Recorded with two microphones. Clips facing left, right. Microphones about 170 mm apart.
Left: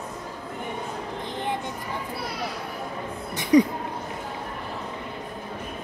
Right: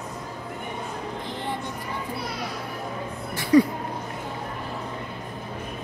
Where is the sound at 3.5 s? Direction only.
20° left (ahead or behind).